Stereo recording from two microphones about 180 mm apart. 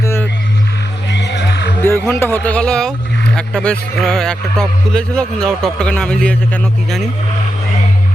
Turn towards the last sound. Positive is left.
turn(degrees=5)  # may be behind; listen again after turning